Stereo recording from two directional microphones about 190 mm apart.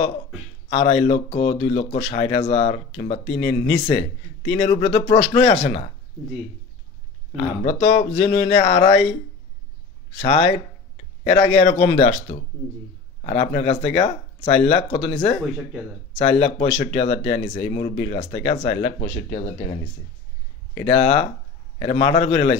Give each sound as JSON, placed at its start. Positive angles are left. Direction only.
{"t": 0.7, "sound": "speech", "side_deg": 30}
{"t": 7.3, "sound": "speech", "side_deg": 30}
{"t": 10.1, "sound": "speech", "side_deg": 35}
{"t": 20.8, "sound": "speech", "side_deg": 30}